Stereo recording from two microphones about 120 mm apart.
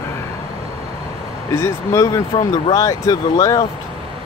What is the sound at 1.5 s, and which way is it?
Speech, 25° left (ahead or behind).